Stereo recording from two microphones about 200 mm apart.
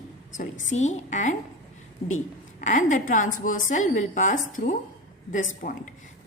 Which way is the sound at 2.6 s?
40° left (ahead or behind).